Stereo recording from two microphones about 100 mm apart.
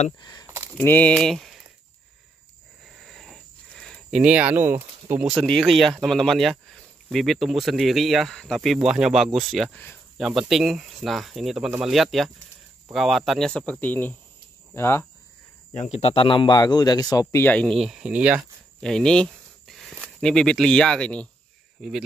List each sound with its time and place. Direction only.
0.2 s speech: 40° left (ahead or behind)
0.5 s a sound: 25° right (ahead or behind)
0.8 s speech: 15° left (ahead or behind)
1.1 s speech: 5° left (ahead or behind)
2.8 s a sound: centre (ahead or behind)
4.2 s speech: 15° right (ahead or behind)
5.2 s speech: 5° right (ahead or behind); by 15.0 s 25° left (ahead or behind)
15.8 s speech: 75° left (ahead or behind); by 17.4 s 40° left (ahead or behind)
17.4 s speech: 15° left (ahead or behind)
17.7 s speech: 5° right (ahead or behind)
18.8 s a sound: 5° left (ahead or behind)
20.2 s speech: 5° left (ahead or behind)
21.8 s speech: 5° right (ahead or behind)